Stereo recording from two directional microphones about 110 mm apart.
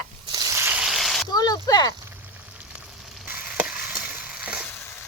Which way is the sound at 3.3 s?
15° right (ahead or behind).